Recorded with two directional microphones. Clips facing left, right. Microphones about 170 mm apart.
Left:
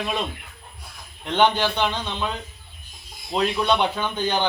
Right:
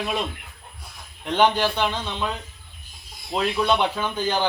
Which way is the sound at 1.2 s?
5° right (ahead or behind).